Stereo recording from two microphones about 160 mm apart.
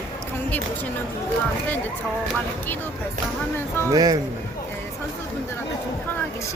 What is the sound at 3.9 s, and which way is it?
Speech, 25° right (ahead or behind).